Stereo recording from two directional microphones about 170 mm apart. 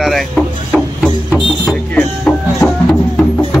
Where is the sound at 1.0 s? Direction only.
Centre (ahead or behind).